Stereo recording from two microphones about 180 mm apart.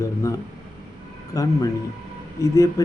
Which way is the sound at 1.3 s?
20° left (ahead or behind).